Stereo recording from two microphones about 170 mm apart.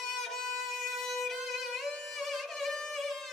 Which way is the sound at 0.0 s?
Centre (ahead or behind).